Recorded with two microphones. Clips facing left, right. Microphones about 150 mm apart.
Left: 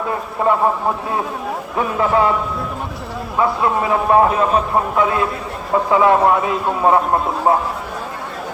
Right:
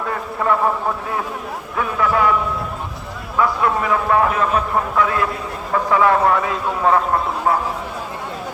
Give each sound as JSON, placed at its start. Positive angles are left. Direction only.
{"t": 0.4, "sound": "speech", "side_deg": 25}
{"t": 1.7, "sound": "speech", "side_deg": 25}
{"t": 3.3, "sound": "speech", "side_deg": 25}